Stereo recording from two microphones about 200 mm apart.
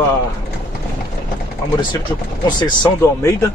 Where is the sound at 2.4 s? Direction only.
20° left (ahead or behind).